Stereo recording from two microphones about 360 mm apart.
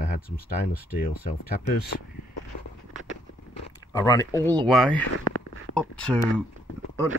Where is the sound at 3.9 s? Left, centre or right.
Centre.